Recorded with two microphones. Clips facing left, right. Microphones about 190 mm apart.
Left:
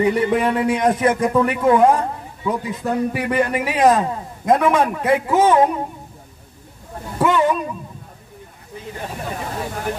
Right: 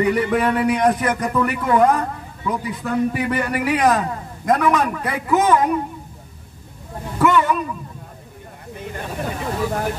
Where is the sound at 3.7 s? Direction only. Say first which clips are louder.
Left 4 dB; 25° left (ahead or behind).